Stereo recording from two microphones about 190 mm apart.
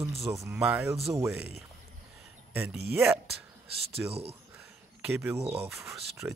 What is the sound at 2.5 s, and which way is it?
Speech, 10° right (ahead or behind).